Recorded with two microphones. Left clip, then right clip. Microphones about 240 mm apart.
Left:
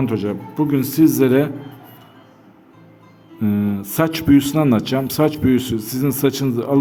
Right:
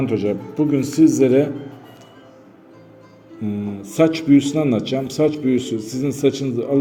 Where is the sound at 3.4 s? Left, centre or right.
Left.